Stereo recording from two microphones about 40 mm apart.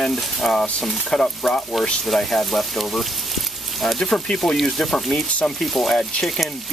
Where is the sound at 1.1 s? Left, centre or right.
Centre.